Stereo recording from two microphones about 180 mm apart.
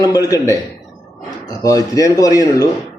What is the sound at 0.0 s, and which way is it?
Speech, 20° left (ahead or behind).